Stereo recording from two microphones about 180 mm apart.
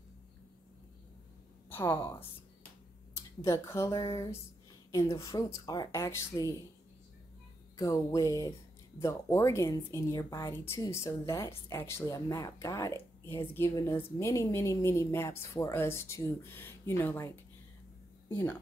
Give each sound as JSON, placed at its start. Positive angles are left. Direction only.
{"t": 1.7, "sound": "a woman's voice", "side_deg": 15}
{"t": 3.4, "sound": "a woman's voice", "side_deg": 15}
{"t": 7.7, "sound": "a sound", "side_deg": 20}
{"t": 9.0, "sound": "a woman's voice", "side_deg": 15}
{"t": 18.3, "sound": "a woman's voice", "side_deg": 10}